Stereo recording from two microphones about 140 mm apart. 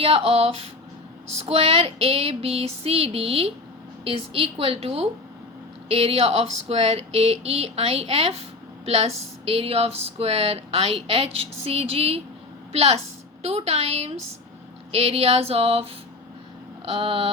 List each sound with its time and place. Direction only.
0.0 s speech: 45° right (ahead or behind)
16.8 s vehicle: 40° right (ahead or behind)